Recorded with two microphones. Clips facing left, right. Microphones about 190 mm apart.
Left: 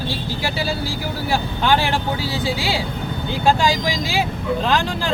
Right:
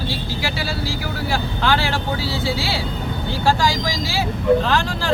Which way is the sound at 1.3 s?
15° left (ahead or behind).